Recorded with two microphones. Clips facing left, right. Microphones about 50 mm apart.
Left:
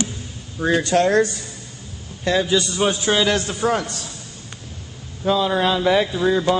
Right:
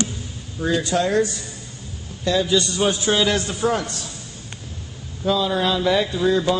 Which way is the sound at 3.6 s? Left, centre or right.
Left.